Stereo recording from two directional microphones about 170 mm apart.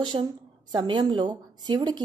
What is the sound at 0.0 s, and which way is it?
A woman's voice, 25° right (ahead or behind).